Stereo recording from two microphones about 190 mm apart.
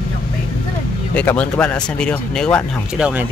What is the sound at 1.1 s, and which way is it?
Speech, 5° left (ahead or behind).